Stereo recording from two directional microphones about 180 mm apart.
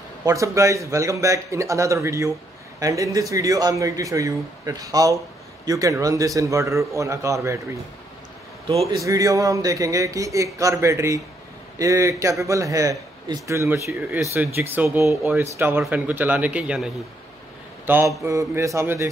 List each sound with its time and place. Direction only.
0.2 s a man's voice: 20° right (ahead or behind)
8.9 s a man's voice: 20° right (ahead or behind)